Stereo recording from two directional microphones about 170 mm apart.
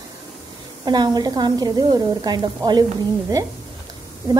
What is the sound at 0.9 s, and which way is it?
A woman's voice, 25° right (ahead or behind).